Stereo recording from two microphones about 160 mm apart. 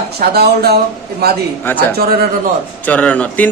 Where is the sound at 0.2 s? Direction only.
75° right (ahead or behind).